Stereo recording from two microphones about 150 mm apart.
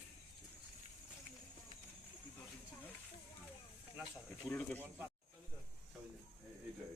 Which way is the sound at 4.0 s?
5° left (ahead or behind).